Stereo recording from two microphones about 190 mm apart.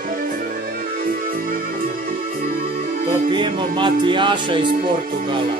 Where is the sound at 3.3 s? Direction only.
25° right (ahead or behind).